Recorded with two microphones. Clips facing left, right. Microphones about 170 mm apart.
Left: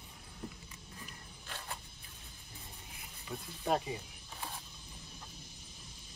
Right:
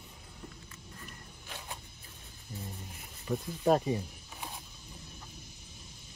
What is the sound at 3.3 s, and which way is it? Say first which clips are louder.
Speech: right 7 dB; 40° right (ahead or behind).